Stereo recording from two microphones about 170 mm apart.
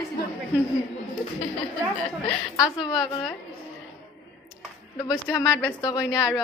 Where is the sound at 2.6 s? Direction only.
25° left (ahead or behind).